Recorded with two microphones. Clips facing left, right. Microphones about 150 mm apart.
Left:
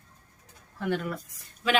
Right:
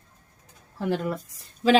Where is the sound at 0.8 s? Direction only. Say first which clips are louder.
Right 3 dB; 30° right (ahead or behind).